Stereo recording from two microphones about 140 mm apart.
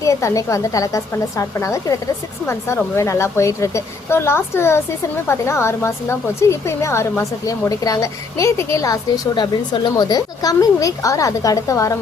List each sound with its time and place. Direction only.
0.0 s speech: 20° left (ahead or behind)